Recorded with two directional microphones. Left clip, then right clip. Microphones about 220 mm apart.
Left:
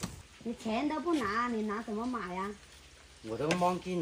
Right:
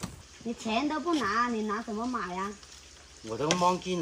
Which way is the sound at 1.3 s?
5° right (ahead or behind).